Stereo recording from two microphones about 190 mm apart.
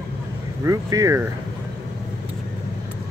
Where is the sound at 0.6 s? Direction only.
15° right (ahead or behind).